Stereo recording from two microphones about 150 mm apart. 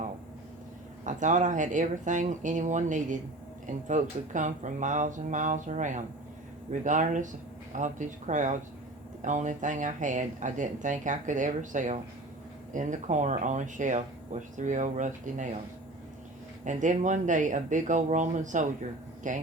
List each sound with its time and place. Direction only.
1.0 s speech: 55° right (ahead or behind)
16.6 s speech: 55° right (ahead or behind)